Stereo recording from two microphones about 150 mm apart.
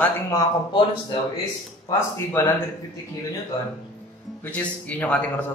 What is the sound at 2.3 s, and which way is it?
Speech, 15° left (ahead or behind).